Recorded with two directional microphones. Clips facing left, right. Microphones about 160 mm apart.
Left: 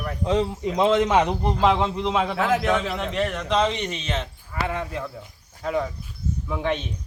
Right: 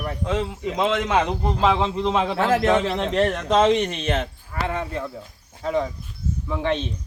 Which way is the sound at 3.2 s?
40° right (ahead or behind).